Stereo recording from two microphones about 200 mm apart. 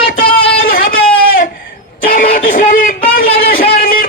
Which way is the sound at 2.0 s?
45° left (ahead or behind).